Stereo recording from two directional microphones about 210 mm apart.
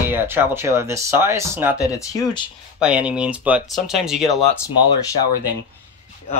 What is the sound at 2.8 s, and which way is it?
Speech, 5° right (ahead or behind).